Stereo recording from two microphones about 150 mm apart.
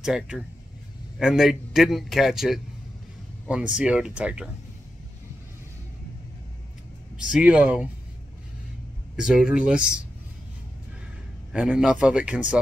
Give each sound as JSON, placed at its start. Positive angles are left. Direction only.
{"t": 0.0, "sound": "a man's voice", "side_deg": -5}
{"t": 7.2, "sound": "a man's voice", "side_deg": -5}
{"t": 9.1, "sound": "a man's voice", "side_deg": -5}
{"t": 11.5, "sound": "a man's voice", "side_deg": -5}